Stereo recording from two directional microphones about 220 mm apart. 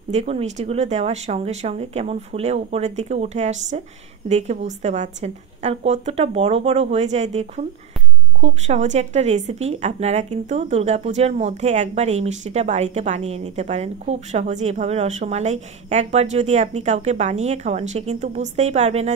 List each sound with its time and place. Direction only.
0.1 s speech: 30° right (ahead or behind)